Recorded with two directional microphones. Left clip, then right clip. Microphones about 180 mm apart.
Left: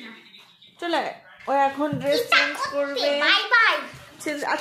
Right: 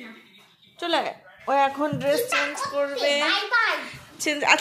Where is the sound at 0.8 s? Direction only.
5° right (ahead or behind).